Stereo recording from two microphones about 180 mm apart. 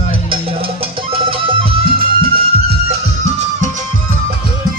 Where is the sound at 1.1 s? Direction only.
30° right (ahead or behind).